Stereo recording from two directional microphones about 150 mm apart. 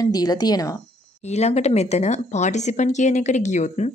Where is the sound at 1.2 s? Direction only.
45° left (ahead or behind).